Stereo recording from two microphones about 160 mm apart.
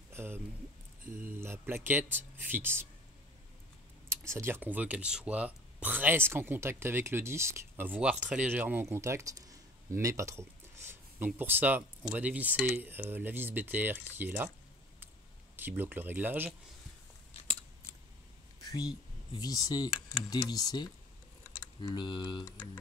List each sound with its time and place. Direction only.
0.1 s a sound: 15° right (ahead or behind)
1.1 s speech: 15° right (ahead or behind)
4.1 s speech: 15° right (ahead or behind)
15.5 s speech: 10° right (ahead or behind)
18.6 s speech: 20° left (ahead or behind)